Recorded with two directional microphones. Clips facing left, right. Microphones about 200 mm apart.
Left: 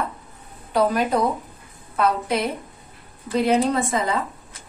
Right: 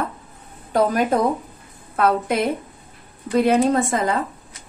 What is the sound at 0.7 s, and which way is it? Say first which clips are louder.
A woman's voice: right 2 dB; 50° right (ahead or behind).